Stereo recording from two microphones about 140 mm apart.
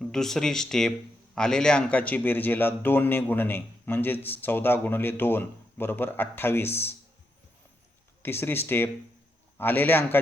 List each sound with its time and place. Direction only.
0.0 s speech: 5° left (ahead or behind)
8.2 s speech: 15° left (ahead or behind)